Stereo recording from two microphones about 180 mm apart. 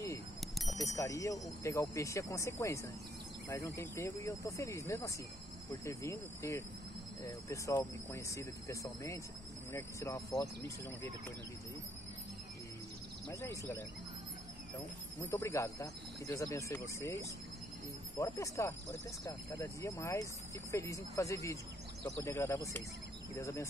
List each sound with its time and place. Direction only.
0.4 s bicycle bell: centre (ahead or behind)
0.8 s speech: 15° left (ahead or behind)
13.3 s speech: 15° left (ahead or behind)
15.3 s speech: 15° left (ahead or behind)